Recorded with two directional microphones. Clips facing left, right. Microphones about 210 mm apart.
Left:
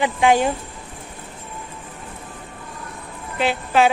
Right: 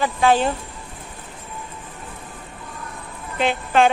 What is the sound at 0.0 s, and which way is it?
Speech, 15° left (ahead or behind).